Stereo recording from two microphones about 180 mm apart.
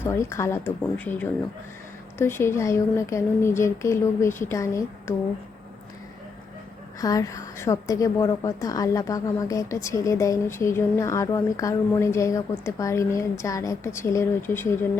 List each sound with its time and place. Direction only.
0.0 s a woman's voice: 15° left (ahead or behind)
7.0 s a woman's voice: 20° left (ahead or behind)